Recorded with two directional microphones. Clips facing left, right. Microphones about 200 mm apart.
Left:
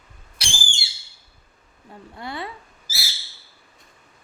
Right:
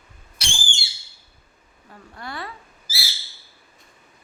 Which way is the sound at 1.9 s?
20° left (ahead or behind).